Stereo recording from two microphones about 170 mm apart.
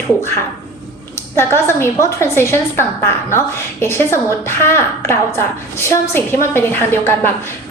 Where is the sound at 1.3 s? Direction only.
15° left (ahead or behind).